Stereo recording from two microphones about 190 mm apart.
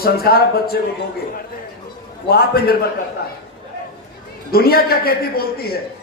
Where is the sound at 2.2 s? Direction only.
55° left (ahead or behind).